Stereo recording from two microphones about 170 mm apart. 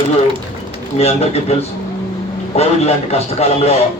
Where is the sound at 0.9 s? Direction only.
40° left (ahead or behind).